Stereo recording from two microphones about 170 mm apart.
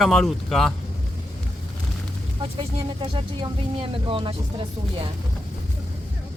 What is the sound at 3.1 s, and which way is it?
Speech, 30° right (ahead or behind).